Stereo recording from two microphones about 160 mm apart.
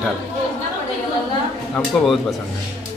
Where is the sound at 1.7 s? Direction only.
5° left (ahead or behind).